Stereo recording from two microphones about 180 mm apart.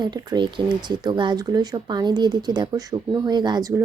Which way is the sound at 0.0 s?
25° right (ahead or behind).